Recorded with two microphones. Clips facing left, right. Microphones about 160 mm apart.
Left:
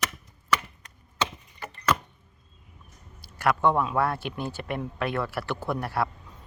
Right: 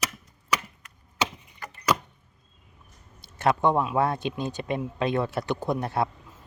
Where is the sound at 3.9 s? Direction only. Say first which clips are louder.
Right 2 dB; 20° right (ahead or behind).